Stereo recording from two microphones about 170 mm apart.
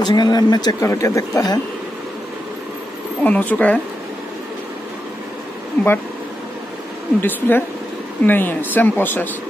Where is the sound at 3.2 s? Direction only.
10° left (ahead or behind).